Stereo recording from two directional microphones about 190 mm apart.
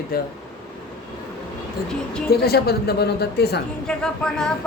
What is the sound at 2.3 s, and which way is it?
A woman's voice, 55° left (ahead or behind).